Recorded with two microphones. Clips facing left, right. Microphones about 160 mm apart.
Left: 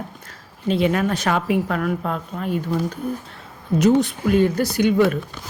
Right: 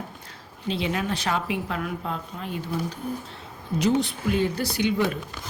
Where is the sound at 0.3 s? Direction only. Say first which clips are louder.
Left 8 dB; 50° left (ahead or behind).